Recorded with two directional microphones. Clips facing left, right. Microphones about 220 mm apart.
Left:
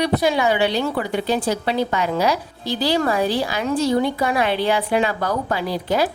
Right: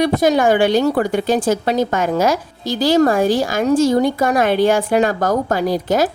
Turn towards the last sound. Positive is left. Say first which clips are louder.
# right 4 dB
turn(degrees=-45)  # may be behind; listen again after turning